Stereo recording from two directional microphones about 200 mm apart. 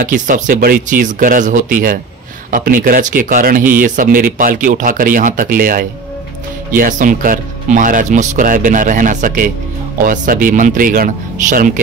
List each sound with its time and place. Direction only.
0.0 s speech: 40° right (ahead or behind)